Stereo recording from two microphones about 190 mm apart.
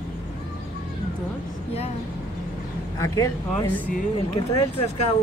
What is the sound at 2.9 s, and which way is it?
Speech, 15° left (ahead or behind).